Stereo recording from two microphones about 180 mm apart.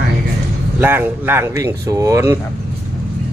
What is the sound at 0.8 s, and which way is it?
Speech, 10° right (ahead or behind).